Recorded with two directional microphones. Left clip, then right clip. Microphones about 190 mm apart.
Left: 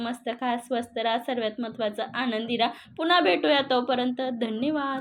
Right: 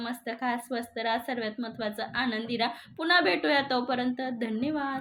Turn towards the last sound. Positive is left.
turn(degrees=-5)  # may be behind; listen again after turning